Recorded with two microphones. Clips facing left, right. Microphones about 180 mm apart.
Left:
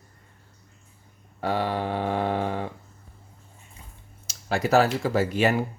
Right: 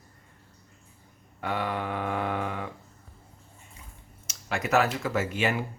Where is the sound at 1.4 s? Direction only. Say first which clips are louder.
Left 4 dB; 35° left (ahead or behind).